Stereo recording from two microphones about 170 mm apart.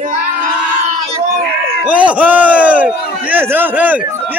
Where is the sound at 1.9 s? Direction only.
10° right (ahead or behind).